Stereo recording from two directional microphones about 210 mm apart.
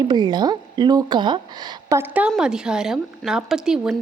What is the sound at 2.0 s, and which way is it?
A woman's voice, 5° right (ahead or behind).